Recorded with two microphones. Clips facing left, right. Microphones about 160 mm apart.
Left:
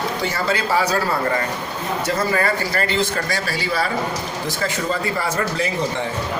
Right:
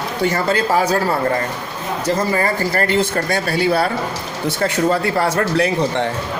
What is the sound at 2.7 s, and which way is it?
Speech, 50° right (ahead or behind).